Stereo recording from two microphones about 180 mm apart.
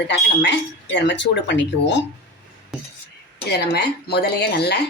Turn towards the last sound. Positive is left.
turn(degrees=65)  # may be behind; listen again after turning